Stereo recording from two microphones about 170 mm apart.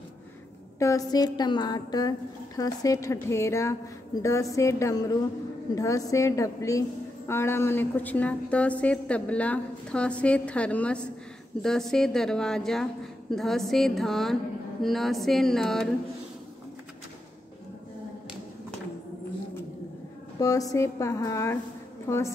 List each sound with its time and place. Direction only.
0.7 s a woman's voice: 20° left (ahead or behind); by 15.9 s 5° left (ahead or behind)
20.3 s a woman's voice: 20° left (ahead or behind)